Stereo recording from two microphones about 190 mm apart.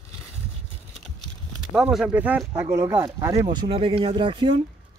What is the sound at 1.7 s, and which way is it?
Speech, centre (ahead or behind).